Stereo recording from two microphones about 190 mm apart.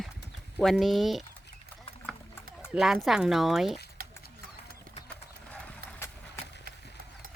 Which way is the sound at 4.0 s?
50° right (ahead or behind).